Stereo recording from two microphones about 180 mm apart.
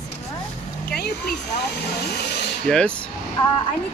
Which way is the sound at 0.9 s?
60° left (ahead or behind).